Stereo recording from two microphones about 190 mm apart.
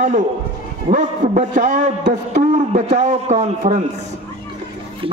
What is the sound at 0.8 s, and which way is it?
A man's voice, 40° right (ahead or behind).